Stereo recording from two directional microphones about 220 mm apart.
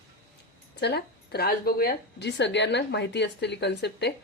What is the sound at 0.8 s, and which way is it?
A woman's voice, 50° left (ahead or behind).